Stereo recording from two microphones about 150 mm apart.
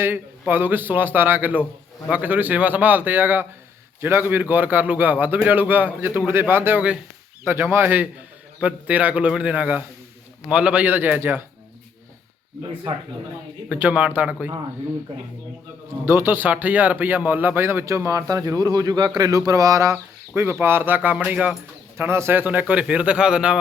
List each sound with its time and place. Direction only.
0.0 s speech: 15° right (ahead or behind)
13.7 s speech: 10° right (ahead or behind)
16.0 s speech: 15° right (ahead or behind)